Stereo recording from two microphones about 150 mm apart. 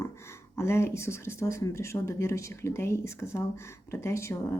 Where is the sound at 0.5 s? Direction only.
15° left (ahead or behind).